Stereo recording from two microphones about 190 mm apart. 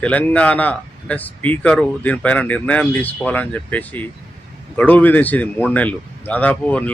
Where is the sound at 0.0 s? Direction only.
5° left (ahead or behind).